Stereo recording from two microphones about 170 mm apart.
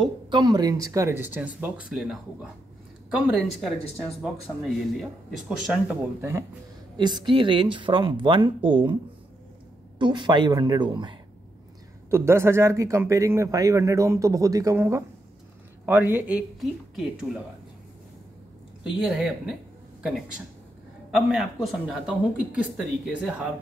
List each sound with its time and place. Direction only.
0.0 s a man's voice: 25° right (ahead or behind); by 2.1 s 5° right (ahead or behind)
3.3 s speech: centre (ahead or behind)
7.0 s speech: 25° right (ahead or behind)
9.9 s speech: 25° right (ahead or behind)
12.1 s a man's voice: 15° right (ahead or behind)
18.9 s speech: 5° right (ahead or behind)